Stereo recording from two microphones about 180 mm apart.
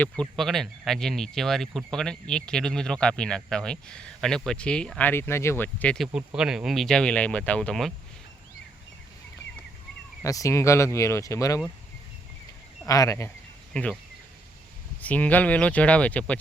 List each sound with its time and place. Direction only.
0.0 s speech: 5° left (ahead or behind)
6.1 s speech: 5° right (ahead or behind)
10.2 s speech: 20° left (ahead or behind)
12.8 s speech: 20° left (ahead or behind)
13.7 s speech: 5° left (ahead or behind)
15.0 s speech: 10° left (ahead or behind)